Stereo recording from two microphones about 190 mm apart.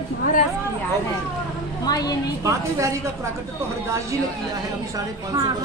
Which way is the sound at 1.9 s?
20° left (ahead or behind).